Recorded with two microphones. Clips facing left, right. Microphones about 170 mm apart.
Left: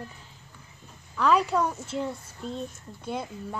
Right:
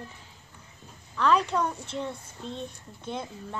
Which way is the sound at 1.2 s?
10° left (ahead or behind).